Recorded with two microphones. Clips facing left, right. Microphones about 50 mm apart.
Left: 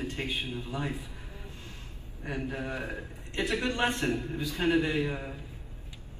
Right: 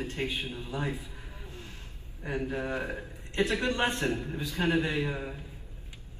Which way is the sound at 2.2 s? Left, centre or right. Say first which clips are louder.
Right 2 dB; right.